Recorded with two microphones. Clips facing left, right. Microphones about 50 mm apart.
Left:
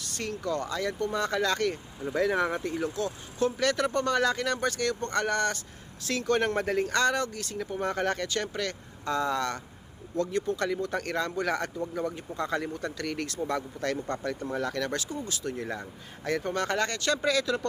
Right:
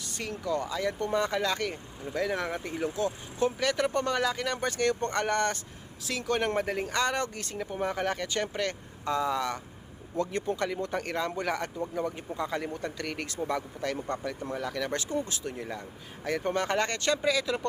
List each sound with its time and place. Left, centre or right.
0.1 s speech: centre
2.0 s speech: centre
2.6 s speech: centre
6.0 s speech: centre
7.2 s speech: right
7.6 s speech: centre
8.3 s speech: right
10.2 s speech: right
10.9 s speech: centre
12.7 s speech: centre
16.2 s speech: centre
17.2 s speech: centre